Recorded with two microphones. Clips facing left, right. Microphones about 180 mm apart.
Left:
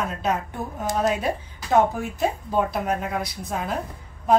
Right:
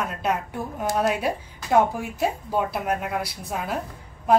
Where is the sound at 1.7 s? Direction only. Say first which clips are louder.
Even; 10° right (ahead or behind).